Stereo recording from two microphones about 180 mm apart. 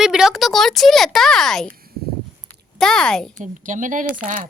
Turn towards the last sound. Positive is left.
turn(degrees=-50)  # may be behind; listen again after turning